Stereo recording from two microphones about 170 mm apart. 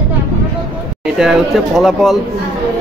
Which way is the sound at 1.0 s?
5° right (ahead or behind).